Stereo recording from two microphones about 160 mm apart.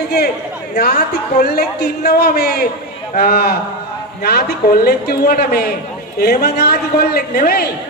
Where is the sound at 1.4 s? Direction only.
85° left.